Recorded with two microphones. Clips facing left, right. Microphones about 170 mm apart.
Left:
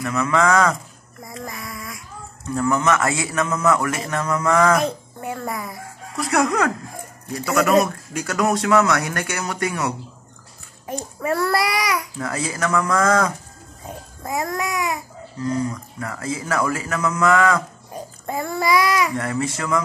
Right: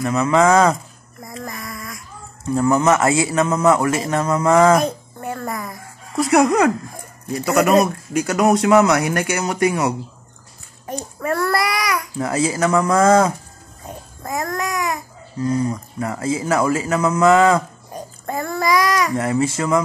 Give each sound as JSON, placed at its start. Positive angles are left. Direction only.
{"t": 0.0, "sound": "speech", "side_deg": -20}
{"t": 1.4, "sound": "a sound", "side_deg": 10}
{"t": 2.4, "sound": "speech", "side_deg": -25}
{"t": 5.2, "sound": "music", "side_deg": 10}
{"t": 6.1, "sound": "speech", "side_deg": -25}
{"t": 11.1, "sound": "speech", "side_deg": 10}
{"t": 12.2, "sound": "speech", "side_deg": -25}
{"t": 14.2, "sound": "babbling", "side_deg": 10}
{"t": 15.4, "sound": "speech", "side_deg": -25}
{"t": 18.2, "sound": "child singing", "side_deg": 10}
{"t": 19.1, "sound": "speech", "side_deg": -25}